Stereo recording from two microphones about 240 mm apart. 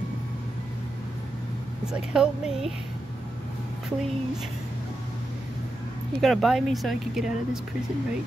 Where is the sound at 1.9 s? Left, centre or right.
Centre.